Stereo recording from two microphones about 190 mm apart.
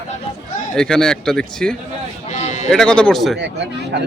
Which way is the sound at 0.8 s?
5° left (ahead or behind).